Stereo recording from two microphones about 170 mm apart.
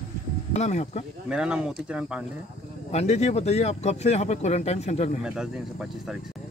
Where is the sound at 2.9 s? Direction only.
40° left (ahead or behind).